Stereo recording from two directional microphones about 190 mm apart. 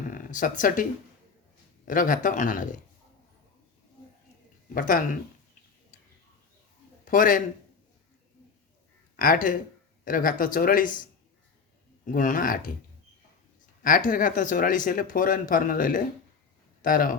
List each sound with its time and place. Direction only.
0.1 s speech: 45° left (ahead or behind)
4.7 s speech: 45° left (ahead or behind)
7.0 s a man's voice: 45° left (ahead or behind)
9.1 s speech: 45° left (ahead or behind)
12.0 s speech: 45° left (ahead or behind)
13.8 s speech: 45° left (ahead or behind)